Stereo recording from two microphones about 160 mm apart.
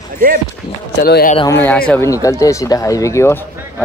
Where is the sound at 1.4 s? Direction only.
10° left (ahead or behind).